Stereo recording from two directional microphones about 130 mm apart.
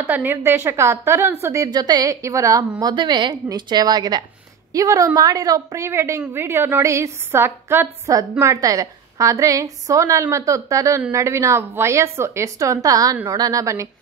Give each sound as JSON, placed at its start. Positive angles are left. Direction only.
{"t": 0.0, "sound": "a woman's voice", "side_deg": -15}
{"t": 2.8, "sound": "a woman's voice", "side_deg": -35}